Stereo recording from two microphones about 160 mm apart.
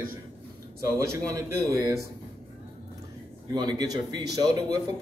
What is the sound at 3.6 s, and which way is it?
Speech, 25° right (ahead or behind).